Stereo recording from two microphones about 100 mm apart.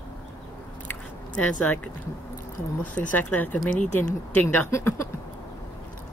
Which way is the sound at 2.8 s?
15° left (ahead or behind).